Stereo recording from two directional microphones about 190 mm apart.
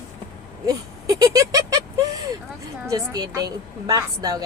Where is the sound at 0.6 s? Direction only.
20° right (ahead or behind).